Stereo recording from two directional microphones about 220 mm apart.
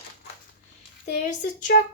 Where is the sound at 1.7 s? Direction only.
40° left (ahead or behind).